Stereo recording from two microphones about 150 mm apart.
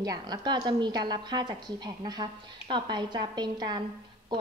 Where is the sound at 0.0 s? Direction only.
25° right (ahead or behind).